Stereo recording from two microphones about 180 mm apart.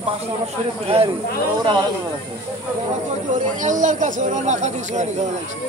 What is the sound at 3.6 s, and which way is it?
Speech, 45° right (ahead or behind).